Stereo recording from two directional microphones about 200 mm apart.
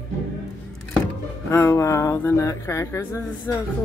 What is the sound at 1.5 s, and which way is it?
Speech, 10° left (ahead or behind).